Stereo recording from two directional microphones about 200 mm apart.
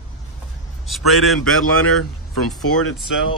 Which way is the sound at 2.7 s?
90° left.